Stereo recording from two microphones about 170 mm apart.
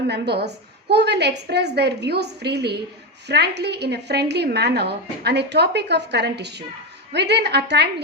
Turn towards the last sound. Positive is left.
turn(degrees=-80)